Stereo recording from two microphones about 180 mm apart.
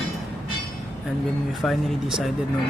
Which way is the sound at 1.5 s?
Centre (ahead or behind).